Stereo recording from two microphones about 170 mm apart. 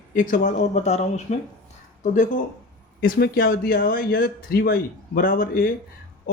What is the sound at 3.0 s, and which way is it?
Speech, 60° left (ahead or behind).